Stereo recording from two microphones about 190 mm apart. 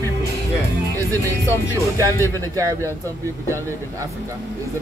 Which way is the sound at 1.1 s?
15° right (ahead or behind).